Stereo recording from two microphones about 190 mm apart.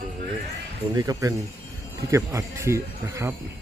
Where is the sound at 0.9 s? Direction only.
20° right (ahead or behind).